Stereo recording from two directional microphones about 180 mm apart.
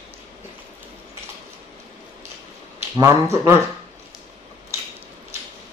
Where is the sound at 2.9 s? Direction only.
15° right (ahead or behind).